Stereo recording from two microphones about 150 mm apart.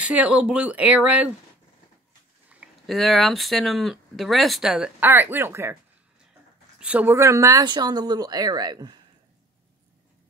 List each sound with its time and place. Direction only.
0.0 s speech: 10° right (ahead or behind)
2.5 s speech: 5° right (ahead or behind)
6.8 s speech: 10° right (ahead or behind); by 9.0 s 30° right (ahead or behind)